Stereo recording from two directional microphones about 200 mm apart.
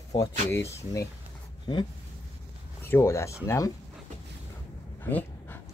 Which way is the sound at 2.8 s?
15° left (ahead or behind).